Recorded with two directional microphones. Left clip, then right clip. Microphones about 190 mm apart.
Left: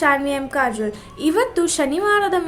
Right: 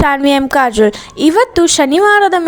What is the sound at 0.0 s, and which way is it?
A woman's voice, 50° right (ahead or behind).